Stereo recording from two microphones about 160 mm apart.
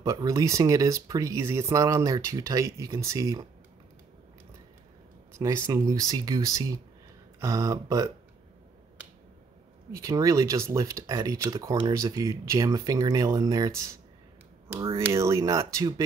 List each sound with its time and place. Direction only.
0.0 s speech: 20° right (ahead or behind)
5.4 s speech: 20° right (ahead or behind)
9.9 s speech: 20° right (ahead or behind)
15.0 s speech: 20° right (ahead or behind)